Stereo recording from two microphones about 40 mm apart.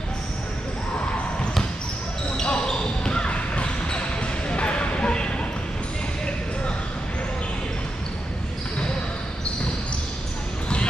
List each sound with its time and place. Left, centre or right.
2.4 s basketball bounce: left